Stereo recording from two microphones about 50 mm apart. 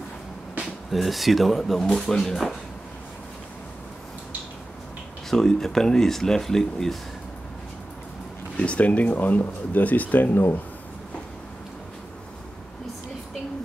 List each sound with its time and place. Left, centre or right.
0.9 s speech: centre
5.3 s speech: centre
8.5 s speech: left